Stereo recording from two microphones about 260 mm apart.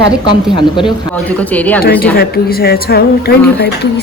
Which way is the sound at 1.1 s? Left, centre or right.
Centre.